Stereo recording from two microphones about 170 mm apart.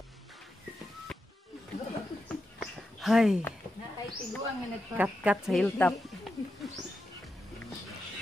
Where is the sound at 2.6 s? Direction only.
Centre (ahead or behind).